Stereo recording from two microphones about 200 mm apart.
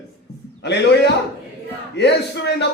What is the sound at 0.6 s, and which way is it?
A man's voice, 60° left (ahead or behind).